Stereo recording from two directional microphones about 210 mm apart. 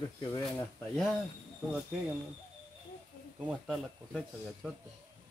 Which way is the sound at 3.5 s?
Centre (ahead or behind).